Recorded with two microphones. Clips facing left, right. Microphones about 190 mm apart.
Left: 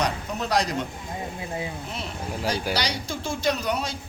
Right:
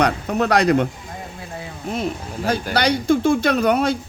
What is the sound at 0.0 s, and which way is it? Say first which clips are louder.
Speech: right 8 dB; 65° right (ahead or behind).